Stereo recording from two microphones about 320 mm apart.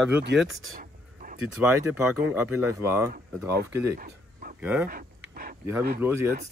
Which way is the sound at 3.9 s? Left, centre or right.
Right.